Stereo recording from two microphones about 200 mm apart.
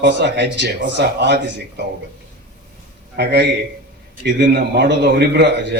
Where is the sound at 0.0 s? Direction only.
60° right (ahead or behind).